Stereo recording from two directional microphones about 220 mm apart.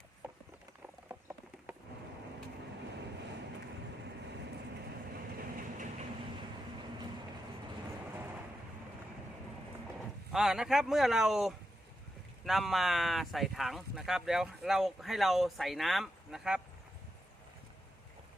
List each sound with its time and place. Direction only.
5.4 s train: 35° right (ahead or behind)
10.3 s speech: centre (ahead or behind)